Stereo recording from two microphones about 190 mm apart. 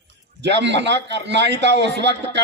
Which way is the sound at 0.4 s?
65° right (ahead or behind).